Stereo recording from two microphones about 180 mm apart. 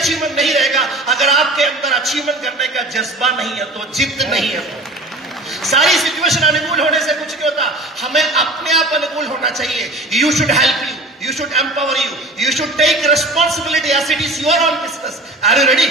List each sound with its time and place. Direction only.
0.0 s a man's voice: centre (ahead or behind)